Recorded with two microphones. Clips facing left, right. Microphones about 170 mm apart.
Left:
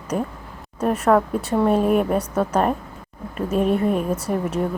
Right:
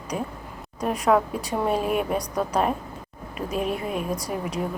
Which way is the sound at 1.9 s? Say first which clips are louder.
Left 6 dB; 40° left (ahead or behind).